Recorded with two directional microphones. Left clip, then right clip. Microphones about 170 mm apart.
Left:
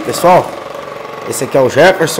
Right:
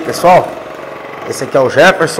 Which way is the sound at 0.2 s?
20° left (ahead or behind).